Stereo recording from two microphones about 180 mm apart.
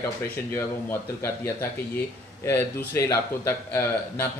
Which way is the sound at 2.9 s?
15° left (ahead or behind).